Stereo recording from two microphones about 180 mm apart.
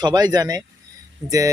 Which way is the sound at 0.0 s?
25° right (ahead or behind).